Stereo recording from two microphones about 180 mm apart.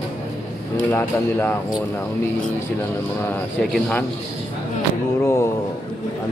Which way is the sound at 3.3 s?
10° left (ahead or behind).